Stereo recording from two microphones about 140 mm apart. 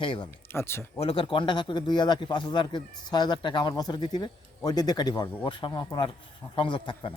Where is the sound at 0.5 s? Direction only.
15° left (ahead or behind).